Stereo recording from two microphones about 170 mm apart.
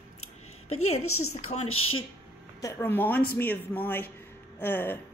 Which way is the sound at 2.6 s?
15° left (ahead or behind).